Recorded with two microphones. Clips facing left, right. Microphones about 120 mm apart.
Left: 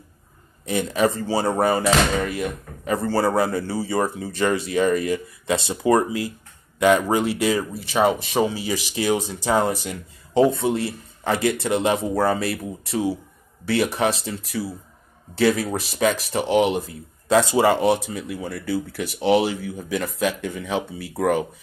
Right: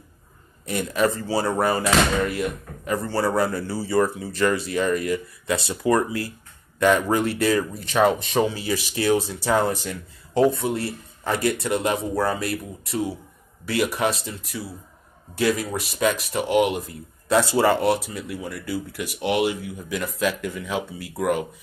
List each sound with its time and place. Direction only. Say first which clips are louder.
0.7 s speech: left 2 dB; 20° left (ahead or behind)
15.4 s speech: left 3 dB; 30° left (ahead or behind)
17.3 s speech: left 2 dB; 20° left (ahead or behind)